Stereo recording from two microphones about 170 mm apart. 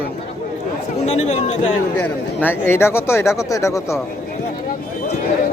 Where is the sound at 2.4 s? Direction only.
15° left (ahead or behind).